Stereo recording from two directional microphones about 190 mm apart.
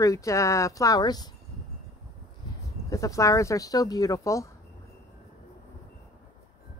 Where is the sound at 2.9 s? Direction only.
15° left (ahead or behind).